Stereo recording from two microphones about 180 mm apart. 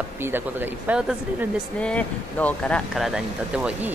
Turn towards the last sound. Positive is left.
turn(degrees=-5)  # may be behind; listen again after turning